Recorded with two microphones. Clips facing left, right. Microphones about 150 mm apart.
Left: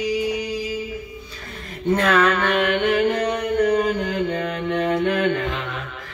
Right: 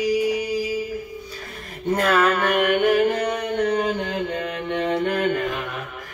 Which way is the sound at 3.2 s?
Centre (ahead or behind).